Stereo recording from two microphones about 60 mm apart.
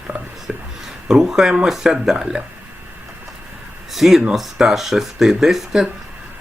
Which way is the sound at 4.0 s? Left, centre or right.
Centre.